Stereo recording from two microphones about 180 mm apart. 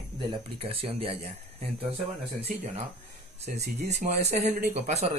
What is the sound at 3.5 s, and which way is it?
Speech, 65° right (ahead or behind).